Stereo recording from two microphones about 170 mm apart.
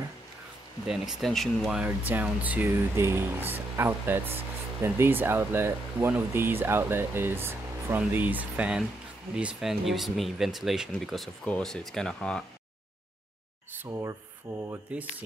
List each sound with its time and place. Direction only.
0.8 s speech: centre (ahead or behind)
13.7 s speech: 15° right (ahead or behind)